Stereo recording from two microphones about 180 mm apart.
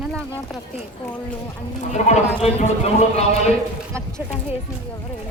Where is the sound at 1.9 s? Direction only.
35° left (ahead or behind).